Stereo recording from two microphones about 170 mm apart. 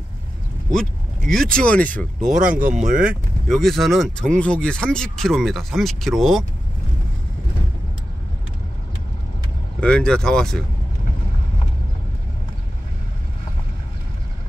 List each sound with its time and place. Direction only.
0.7 s speech: 5° left (ahead or behind)
2.3 s speech: 50° right (ahead or behind)
2.9 s speech: 5° right (ahead or behind)
9.8 s speech: 5° left (ahead or behind)